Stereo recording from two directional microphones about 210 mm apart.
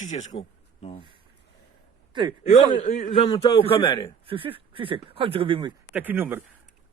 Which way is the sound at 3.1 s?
25° left (ahead or behind).